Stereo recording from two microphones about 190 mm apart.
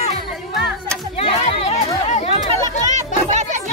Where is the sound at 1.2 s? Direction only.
35° left (ahead or behind).